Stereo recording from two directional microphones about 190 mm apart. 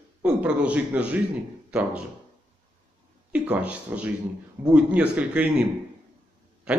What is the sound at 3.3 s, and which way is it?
A man's voice, 5° right (ahead or behind).